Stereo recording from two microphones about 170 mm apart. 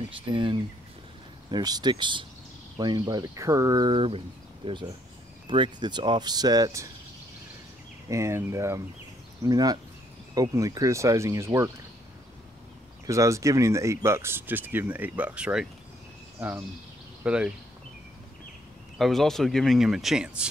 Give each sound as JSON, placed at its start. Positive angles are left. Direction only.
{"t": 0.3, "sound": "speech", "side_deg": -30}
{"t": 8.1, "sound": "speech", "side_deg": -15}
{"t": 13.0, "sound": "speech", "side_deg": -20}
{"t": 18.9, "sound": "speech", "side_deg": 0}